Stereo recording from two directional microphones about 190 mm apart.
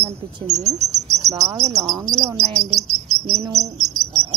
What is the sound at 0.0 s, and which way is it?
Speech, 35° right (ahead or behind).